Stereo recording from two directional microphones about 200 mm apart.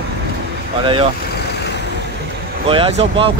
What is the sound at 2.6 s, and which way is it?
Speech, 25° right (ahead or behind).